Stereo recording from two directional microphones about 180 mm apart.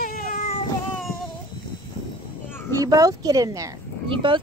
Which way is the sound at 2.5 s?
10° left (ahead or behind).